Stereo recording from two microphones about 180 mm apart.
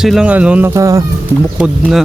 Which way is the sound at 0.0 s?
5° right (ahead or behind).